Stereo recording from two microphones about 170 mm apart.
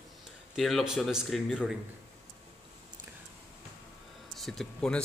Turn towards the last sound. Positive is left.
turn(degrees=5)  # may be behind; listen again after turning